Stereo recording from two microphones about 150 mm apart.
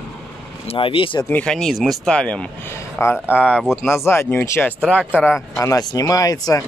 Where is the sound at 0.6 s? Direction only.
35° left (ahead or behind).